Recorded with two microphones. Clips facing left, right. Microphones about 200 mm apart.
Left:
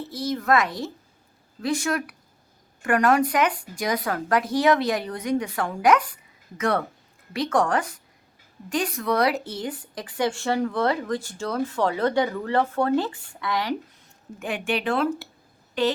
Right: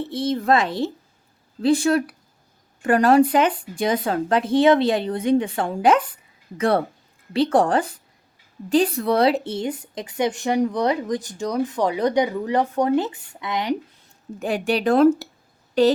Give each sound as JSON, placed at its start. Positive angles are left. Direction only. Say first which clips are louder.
{"t": 0.1, "sound": "speech", "louder": "right 2 dB", "side_deg": -25}
{"t": 14.3, "sound": "speech", "louder": "right 5 dB", "side_deg": -35}